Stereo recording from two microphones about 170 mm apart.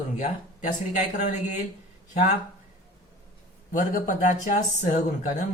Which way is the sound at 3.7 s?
50° left (ahead or behind).